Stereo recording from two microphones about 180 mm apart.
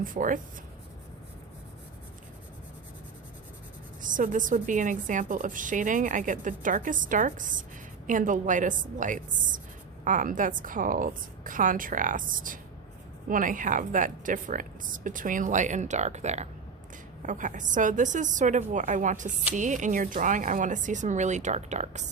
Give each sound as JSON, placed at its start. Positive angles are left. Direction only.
{"t": 0.0, "sound": "a woman's voice", "side_deg": -50}
{"t": 4.0, "sound": "a woman's voice", "side_deg": -45}